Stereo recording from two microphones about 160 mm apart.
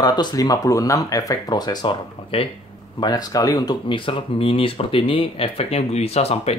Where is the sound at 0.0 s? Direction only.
25° left (ahead or behind).